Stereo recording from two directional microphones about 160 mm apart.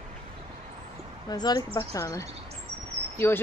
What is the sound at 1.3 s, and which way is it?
Speech, 25° left (ahead or behind).